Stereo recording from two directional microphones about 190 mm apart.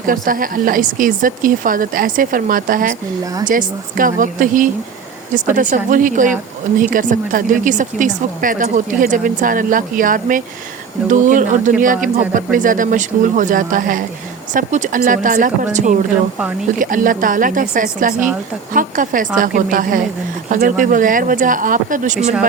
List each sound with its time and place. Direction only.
0.0 s a woman's voice: 45° right (ahead or behind)